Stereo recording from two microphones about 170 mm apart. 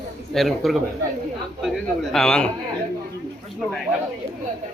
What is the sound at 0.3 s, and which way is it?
A man's voice, centre (ahead or behind).